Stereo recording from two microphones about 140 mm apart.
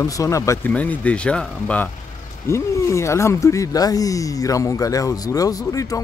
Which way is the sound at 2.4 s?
20° left (ahead or behind).